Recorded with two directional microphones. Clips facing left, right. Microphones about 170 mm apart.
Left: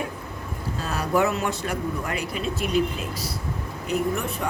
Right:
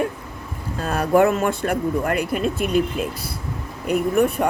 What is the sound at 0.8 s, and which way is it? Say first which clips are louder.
Speech: right 6 dB; 55° right (ahead or behind).